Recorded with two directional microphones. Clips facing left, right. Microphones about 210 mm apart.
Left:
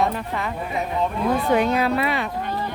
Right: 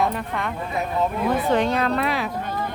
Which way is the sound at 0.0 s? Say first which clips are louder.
Left 1 dB; centre (ahead or behind).